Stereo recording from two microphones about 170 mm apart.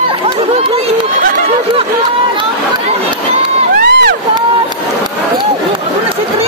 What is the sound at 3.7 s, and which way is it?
Crowd, 65° right (ahead or behind).